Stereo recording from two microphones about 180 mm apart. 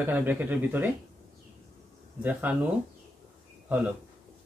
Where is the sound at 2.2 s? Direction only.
10° right (ahead or behind).